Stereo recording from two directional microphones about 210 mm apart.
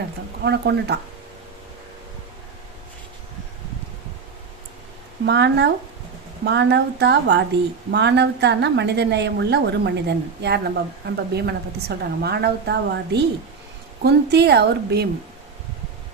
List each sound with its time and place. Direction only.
0.4 s a woman's voice: 55° right (ahead or behind)
5.2 s a woman's voice: 55° right (ahead or behind)